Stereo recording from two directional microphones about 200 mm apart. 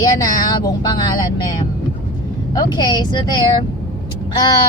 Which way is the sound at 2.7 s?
20° left (ahead or behind).